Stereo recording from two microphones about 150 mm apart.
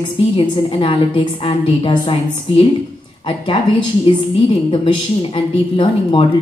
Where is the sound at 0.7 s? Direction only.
35° left (ahead or behind).